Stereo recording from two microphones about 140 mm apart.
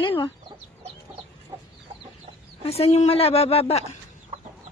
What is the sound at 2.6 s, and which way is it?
Speech, 45° left (ahead or behind).